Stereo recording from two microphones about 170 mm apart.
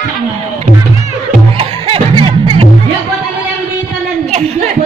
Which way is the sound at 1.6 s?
35° right (ahead or behind).